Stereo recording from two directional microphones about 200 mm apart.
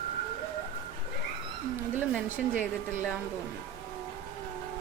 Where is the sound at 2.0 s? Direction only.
5° right (ahead or behind).